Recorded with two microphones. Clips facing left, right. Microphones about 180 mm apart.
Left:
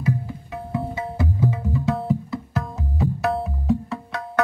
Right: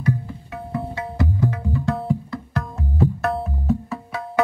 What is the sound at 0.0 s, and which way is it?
Music, centre (ahead or behind).